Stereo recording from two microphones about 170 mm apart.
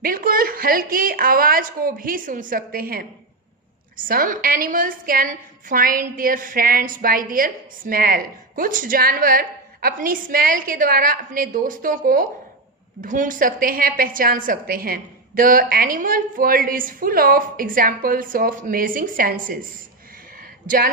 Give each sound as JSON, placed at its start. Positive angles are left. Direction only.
{"t": 0.0, "sound": "a woman's voice", "side_deg": -55}
{"t": 20.7, "sound": "a woman's voice", "side_deg": -60}